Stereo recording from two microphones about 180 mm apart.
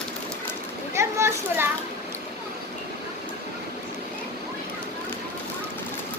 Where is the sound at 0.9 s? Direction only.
15° right (ahead or behind).